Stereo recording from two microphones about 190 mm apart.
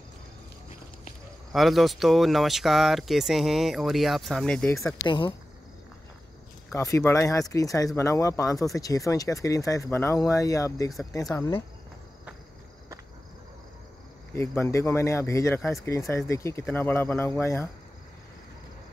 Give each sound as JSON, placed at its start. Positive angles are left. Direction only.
{"t": 1.5, "sound": "speech", "side_deg": 0}
{"t": 5.0, "sound": "speech", "side_deg": 25}
{"t": 6.7, "sound": "speech", "side_deg": 15}
{"t": 14.3, "sound": "speech", "side_deg": 10}